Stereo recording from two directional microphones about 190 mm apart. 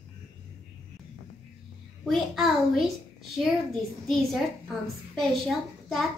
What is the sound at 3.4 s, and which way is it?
A child's voice, centre (ahead or behind).